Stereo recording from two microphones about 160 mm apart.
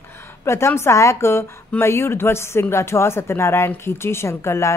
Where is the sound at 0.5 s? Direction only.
15° left (ahead or behind).